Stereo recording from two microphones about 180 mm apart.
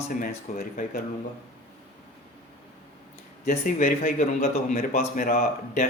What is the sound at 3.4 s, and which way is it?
Speech, 50° left (ahead or behind).